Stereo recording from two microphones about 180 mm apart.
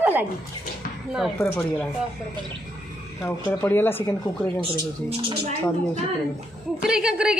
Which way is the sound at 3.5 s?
10° left (ahead or behind).